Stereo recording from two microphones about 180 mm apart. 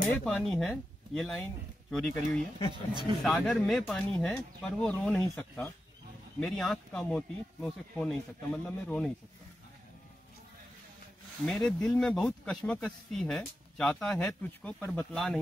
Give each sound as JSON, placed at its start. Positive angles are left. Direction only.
{"t": 0.1, "sound": "speech", "side_deg": 5}
{"t": 2.7, "sound": "speech", "side_deg": -25}
{"t": 3.3, "sound": "speech", "side_deg": 5}
{"t": 6.4, "sound": "speech", "side_deg": 0}
{"t": 11.4, "sound": "speech", "side_deg": 5}